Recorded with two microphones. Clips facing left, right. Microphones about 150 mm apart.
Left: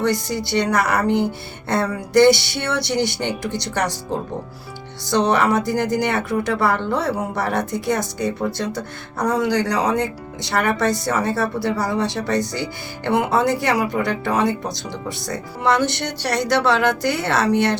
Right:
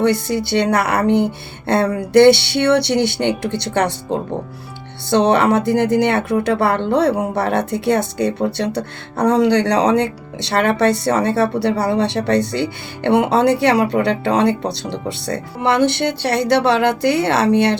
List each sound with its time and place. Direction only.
0.0 s speech: 60° right (ahead or behind)
5.1 s speech: 60° right (ahead or behind)